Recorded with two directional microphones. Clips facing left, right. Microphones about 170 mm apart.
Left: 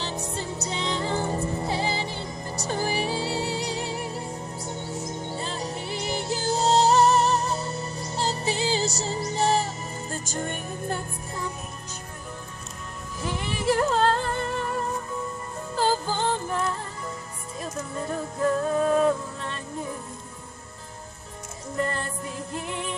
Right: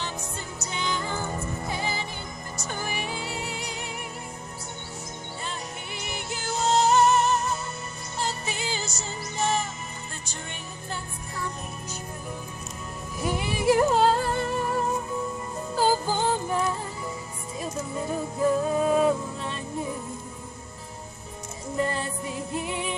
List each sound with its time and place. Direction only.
0.0 s music: 35° left (ahead or behind)
5.4 s music: 30° left (ahead or behind)
13.2 s music: 10° right (ahead or behind)
21.7 s music: 5° right (ahead or behind)